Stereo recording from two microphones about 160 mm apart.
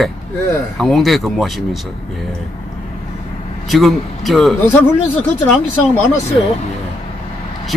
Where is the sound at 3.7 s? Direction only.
Centre (ahead or behind).